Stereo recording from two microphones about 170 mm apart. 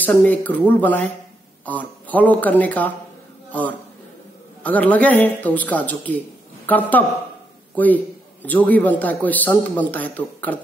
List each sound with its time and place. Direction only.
0.0 s a man's voice: 10° left (ahead or behind)
4.6 s a man's voice: 10° left (ahead or behind)